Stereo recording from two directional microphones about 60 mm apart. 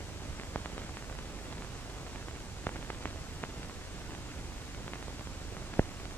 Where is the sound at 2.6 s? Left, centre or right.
Left.